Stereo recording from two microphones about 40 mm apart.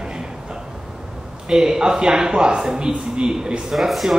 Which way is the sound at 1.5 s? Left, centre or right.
Centre.